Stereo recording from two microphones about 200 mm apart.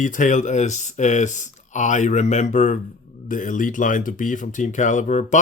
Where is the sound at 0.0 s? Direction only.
40° left (ahead or behind).